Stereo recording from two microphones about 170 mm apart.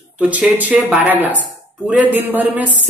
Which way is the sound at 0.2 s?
10° right (ahead or behind).